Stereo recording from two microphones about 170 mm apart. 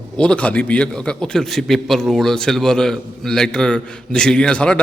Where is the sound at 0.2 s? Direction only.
5° left (ahead or behind).